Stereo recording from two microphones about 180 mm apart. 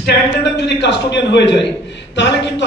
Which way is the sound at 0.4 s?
75° left (ahead or behind).